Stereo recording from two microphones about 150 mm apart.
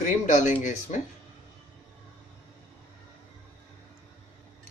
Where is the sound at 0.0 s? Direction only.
55° left (ahead or behind).